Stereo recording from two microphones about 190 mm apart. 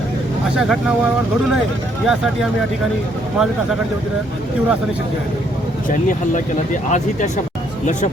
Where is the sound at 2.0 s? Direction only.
Centre (ahead or behind).